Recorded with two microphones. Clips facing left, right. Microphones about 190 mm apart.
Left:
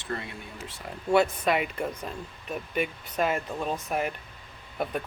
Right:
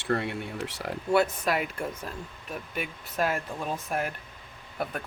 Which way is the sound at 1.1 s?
5° right (ahead or behind).